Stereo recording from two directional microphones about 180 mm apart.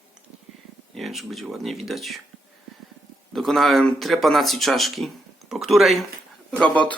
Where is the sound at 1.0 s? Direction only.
Centre (ahead or behind).